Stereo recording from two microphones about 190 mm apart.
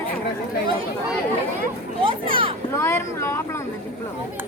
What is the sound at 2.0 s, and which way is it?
Speech, 25° right (ahead or behind).